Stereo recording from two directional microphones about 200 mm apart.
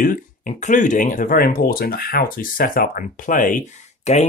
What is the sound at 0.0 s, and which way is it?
Speech, 45° left (ahead or behind).